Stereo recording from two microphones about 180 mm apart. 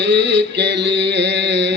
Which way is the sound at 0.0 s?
75° right (ahead or behind).